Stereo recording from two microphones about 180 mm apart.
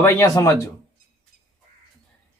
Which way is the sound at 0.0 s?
15° left (ahead or behind).